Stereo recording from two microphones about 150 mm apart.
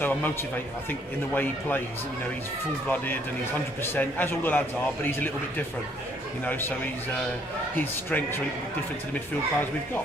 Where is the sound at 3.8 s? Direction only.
15° left (ahead or behind).